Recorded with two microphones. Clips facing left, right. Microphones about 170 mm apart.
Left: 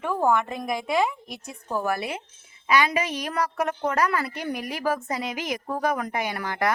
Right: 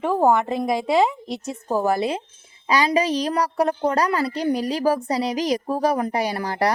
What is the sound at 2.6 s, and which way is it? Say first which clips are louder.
A woman's voice: right 4 dB; 35° right (ahead or behind).